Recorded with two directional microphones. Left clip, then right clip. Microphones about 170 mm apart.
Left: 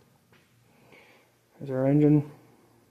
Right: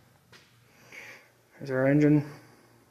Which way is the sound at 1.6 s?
20° left (ahead or behind).